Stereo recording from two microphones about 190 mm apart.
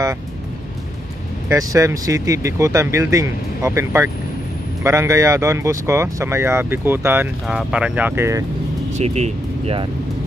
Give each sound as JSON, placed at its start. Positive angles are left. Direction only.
{"t": 1.5, "sound": "speech", "side_deg": -15}
{"t": 8.9, "sound": "speech", "side_deg": -35}